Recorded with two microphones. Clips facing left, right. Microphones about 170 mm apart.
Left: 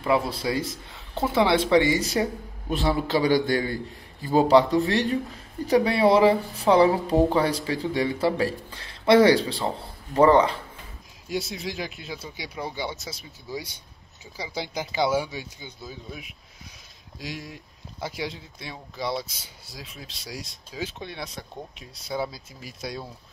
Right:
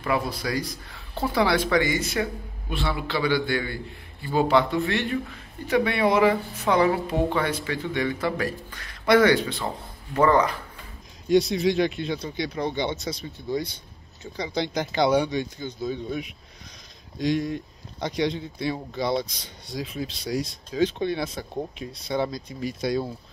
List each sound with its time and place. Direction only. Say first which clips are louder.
0.0 s speech: left 2 dB; 25° left (ahead or behind)
11.2 s speech: right 10 dB; centre (ahead or behind)